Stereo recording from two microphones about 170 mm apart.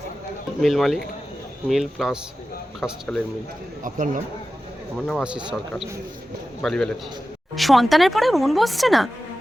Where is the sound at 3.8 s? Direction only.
50° right (ahead or behind).